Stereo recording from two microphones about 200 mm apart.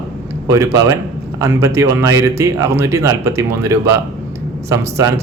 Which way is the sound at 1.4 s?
15° right (ahead or behind).